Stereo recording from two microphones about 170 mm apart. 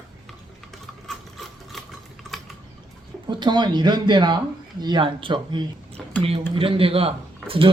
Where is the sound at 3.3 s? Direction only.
25° right (ahead or behind).